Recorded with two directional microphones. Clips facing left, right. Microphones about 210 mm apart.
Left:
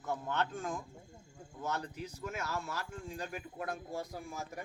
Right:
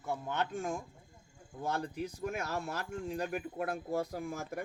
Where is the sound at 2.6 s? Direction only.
60° right (ahead or behind).